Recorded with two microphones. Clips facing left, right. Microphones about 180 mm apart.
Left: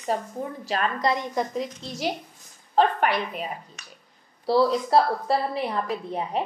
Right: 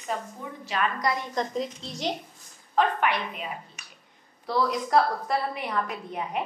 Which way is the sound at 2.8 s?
40° left (ahead or behind).